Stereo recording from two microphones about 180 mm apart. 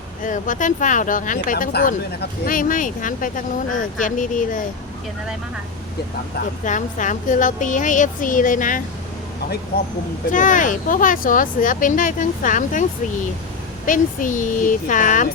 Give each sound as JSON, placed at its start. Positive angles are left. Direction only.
{"t": 0.3, "sound": "speech", "side_deg": 45}
{"t": 6.7, "sound": "speech", "side_deg": 45}
{"t": 10.3, "sound": "speech", "side_deg": 45}
{"t": 13.8, "sound": "speech", "side_deg": 45}